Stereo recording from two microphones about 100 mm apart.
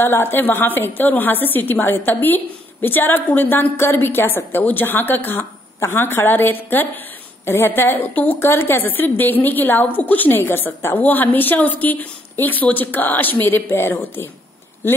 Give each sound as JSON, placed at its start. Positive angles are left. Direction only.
{"t": 0.0, "sound": "a woman's voice", "side_deg": 20}